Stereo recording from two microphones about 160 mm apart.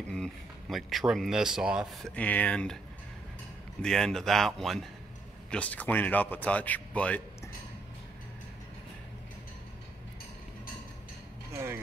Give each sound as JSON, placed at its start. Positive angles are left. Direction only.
{"t": 0.1, "sound": "speech", "side_deg": 0}
{"t": 3.8, "sound": "a man's voice", "side_deg": 5}
{"t": 11.5, "sound": "vehicle", "side_deg": -15}